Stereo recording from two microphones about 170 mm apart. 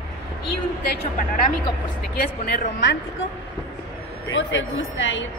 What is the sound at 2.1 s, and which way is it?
Speech, 70° left (ahead or behind).